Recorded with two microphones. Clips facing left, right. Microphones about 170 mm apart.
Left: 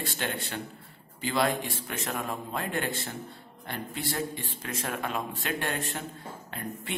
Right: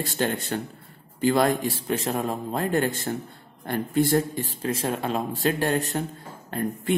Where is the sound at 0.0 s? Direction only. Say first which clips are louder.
Right 7 dB; 40° right (ahead or behind).